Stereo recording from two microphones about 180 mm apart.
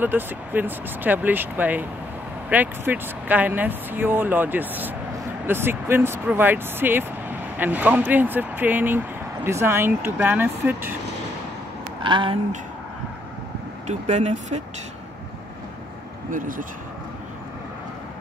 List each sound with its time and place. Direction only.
0.0 s speech: 10° right (ahead or behind)
12.0 s speech: 30° right (ahead or behind)
13.8 s speech: 40° right (ahead or behind)
16.3 s speech: 45° right (ahead or behind)